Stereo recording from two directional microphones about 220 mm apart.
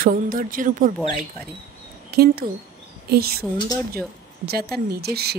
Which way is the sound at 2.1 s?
45° right (ahead or behind).